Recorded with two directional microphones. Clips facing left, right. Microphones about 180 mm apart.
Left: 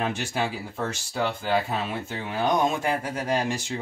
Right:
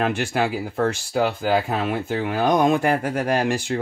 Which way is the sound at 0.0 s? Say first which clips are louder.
Right 5 dB; 60° right (ahead or behind).